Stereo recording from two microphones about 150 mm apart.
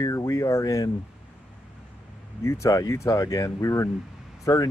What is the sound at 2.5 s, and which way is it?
Speech, 20° left (ahead or behind).